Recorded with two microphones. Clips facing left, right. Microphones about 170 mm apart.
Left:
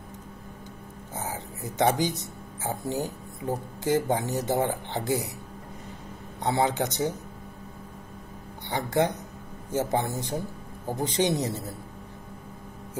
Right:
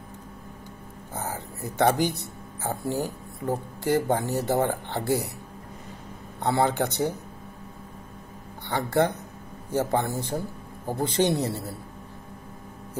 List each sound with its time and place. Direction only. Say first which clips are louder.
1.1 s a sound: right 1 dB; 15° left (ahead or behind)
3.8 s speech: right 1 dB; 15° left (ahead or behind)
6.4 s speech: right 2 dB; 20° left (ahead or behind)
8.6 s speech: right 2 dB; 15° left (ahead or behind)